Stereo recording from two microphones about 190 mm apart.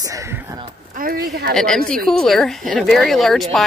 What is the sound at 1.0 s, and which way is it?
Speech, 50° right (ahead or behind).